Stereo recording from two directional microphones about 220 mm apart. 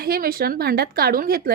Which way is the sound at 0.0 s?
40° right (ahead or behind).